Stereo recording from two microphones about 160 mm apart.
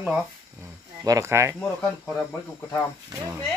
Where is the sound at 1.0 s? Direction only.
20° right (ahead or behind).